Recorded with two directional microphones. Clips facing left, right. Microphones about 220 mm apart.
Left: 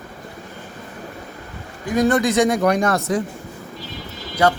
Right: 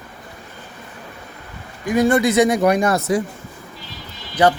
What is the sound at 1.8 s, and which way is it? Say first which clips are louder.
Speech: right 2 dB; 10° right (ahead or behind).